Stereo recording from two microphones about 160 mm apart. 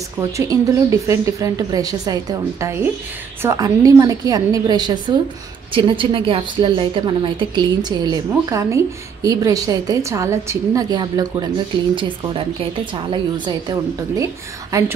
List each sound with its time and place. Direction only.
0.2 s a woman's voice: 20° right (ahead or behind)